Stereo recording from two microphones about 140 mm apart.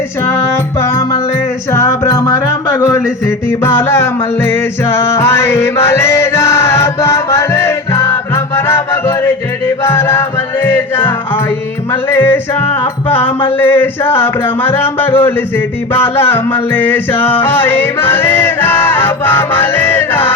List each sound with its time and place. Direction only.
0.8 s music: 20° left (ahead or behind)